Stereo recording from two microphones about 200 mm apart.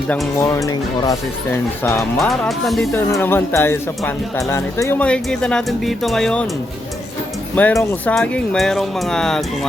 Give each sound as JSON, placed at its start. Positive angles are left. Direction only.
{"t": 0.3, "sound": "speech", "side_deg": 15}
{"t": 2.1, "sound": "speech", "side_deg": 5}
{"t": 2.9, "sound": "speech", "side_deg": 10}
{"t": 7.5, "sound": "speech", "side_deg": 10}